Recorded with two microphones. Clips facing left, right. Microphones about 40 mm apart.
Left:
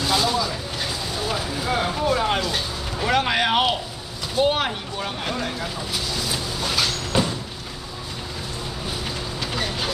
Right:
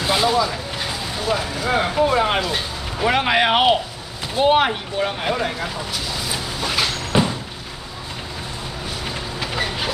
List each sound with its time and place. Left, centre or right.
0.0 s vehicle: right
1.7 s speech: right
6.3 s a sound: centre
9.0 s train: centre